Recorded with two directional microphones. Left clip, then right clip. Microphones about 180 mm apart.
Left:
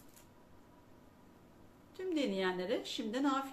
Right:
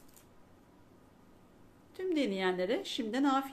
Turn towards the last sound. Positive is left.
turn(degrees=-55)  # may be behind; listen again after turning